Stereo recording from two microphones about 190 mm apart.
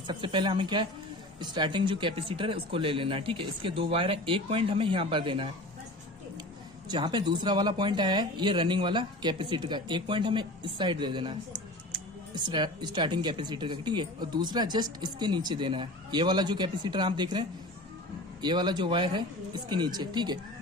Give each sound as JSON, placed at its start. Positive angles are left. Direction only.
{"t": 0.0, "sound": "speech", "side_deg": -25}
{"t": 6.9, "sound": "speech", "side_deg": -20}
{"t": 12.4, "sound": "speech", "side_deg": -25}